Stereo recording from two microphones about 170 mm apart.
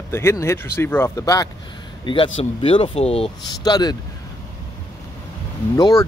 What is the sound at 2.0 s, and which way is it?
Speech, 30° left (ahead or behind).